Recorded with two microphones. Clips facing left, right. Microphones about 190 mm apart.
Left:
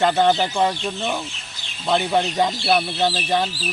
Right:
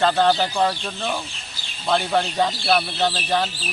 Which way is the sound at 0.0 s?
20° left (ahead or behind).